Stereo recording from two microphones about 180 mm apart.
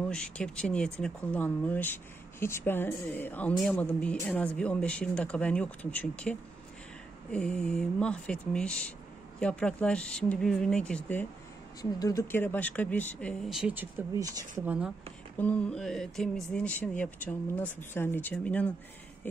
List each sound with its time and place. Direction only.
0.1 s speech: 5° left (ahead or behind)
11.8 s speech: 20° left (ahead or behind); by 14.0 s 10° right (ahead or behind)
15.3 s speech: 10° left (ahead or behind)